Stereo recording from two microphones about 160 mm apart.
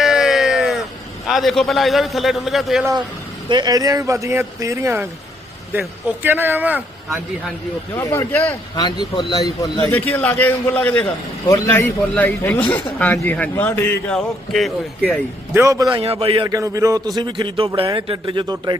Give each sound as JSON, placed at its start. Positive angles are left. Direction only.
{"t": 0.0, "sound": "a sound", "side_deg": 0}
{"t": 1.3, "sound": "a man's voice", "side_deg": 0}
{"t": 3.5, "sound": "a man's voice", "side_deg": -25}
{"t": 7.9, "sound": "a man's voice", "side_deg": 15}
{"t": 8.7, "sound": "speech", "side_deg": 25}
{"t": 9.9, "sound": "a man's voice", "side_deg": 10}
{"t": 15.5, "sound": "a man's voice", "side_deg": -20}
{"t": 16.0, "sound": "a man's voice", "side_deg": -35}
{"t": 16.5, "sound": "a man's voice", "side_deg": -20}